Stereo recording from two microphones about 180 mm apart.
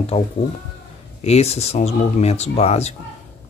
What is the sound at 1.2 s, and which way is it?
Speech, 35° left (ahead or behind).